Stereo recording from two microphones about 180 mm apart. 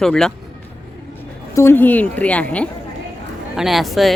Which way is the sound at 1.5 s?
15° left (ahead or behind).